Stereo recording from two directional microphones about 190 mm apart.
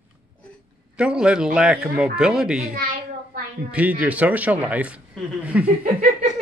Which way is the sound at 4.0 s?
10° right (ahead or behind).